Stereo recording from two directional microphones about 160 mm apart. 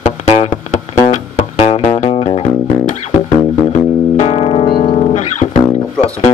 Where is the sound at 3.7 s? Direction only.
45° left (ahead or behind).